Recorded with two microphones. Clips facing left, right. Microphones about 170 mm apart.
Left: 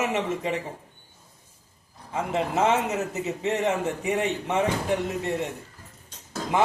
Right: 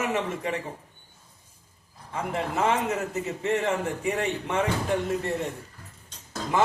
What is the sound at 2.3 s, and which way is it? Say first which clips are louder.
A man's voice: left 3 dB; 20° left (ahead or behind).